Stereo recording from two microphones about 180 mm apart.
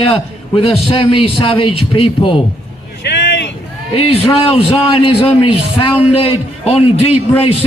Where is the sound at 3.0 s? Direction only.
70° left (ahead or behind).